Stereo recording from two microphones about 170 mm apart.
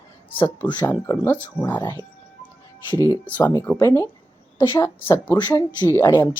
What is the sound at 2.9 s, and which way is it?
Speech, 15° right (ahead or behind).